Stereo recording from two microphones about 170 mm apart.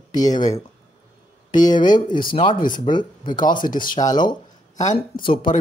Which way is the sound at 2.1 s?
55° left (ahead or behind).